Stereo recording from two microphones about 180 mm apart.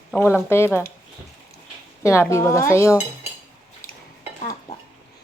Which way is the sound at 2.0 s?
15° left (ahead or behind).